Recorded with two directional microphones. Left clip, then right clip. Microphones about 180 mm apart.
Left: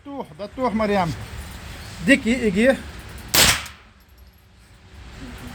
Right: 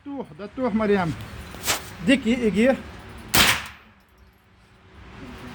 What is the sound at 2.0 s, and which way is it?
Speech, 25° left (ahead or behind).